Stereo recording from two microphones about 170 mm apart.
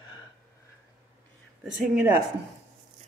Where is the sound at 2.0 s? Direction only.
10° right (ahead or behind).